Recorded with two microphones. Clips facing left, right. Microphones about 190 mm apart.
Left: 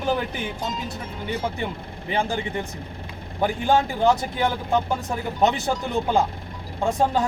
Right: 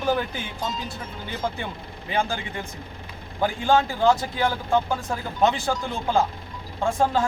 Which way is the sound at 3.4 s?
20° left (ahead or behind).